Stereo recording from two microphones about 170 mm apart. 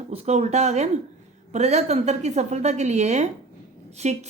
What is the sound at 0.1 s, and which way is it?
Speech, 40° right (ahead or behind).